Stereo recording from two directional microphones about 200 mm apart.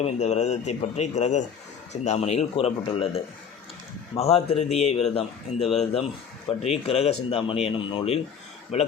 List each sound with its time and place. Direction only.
0.0 s speech: 35° left (ahead or behind)
4.2 s speech: 30° left (ahead or behind)